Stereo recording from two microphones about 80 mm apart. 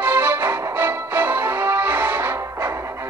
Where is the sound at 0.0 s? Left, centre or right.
Right.